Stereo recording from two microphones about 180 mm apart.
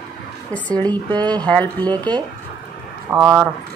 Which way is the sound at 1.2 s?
5° left (ahead or behind).